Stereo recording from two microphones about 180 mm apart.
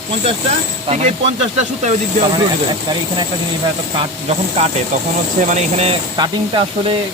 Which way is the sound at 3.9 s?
35° right (ahead or behind).